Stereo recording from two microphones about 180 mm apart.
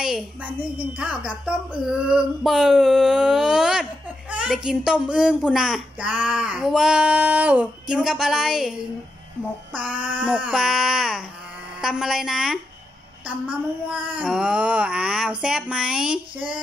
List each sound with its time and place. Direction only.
0.7 s a woman's voice: 5° right (ahead or behind)
9.8 s a woman's voice: 10° right (ahead or behind)